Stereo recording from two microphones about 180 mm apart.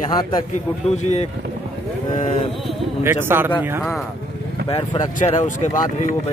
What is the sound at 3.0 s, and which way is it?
Speech, 10° right (ahead or behind).